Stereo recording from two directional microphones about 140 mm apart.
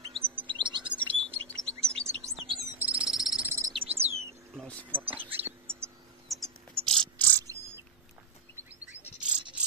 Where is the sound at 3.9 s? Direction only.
45° right (ahead or behind).